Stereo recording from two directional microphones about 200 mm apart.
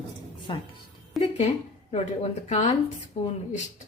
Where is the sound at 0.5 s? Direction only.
25° left (ahead or behind).